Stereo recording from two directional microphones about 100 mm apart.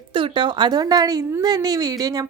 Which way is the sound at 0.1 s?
55° right (ahead or behind).